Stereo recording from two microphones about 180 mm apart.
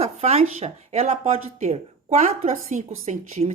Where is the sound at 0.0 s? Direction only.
35° right (ahead or behind).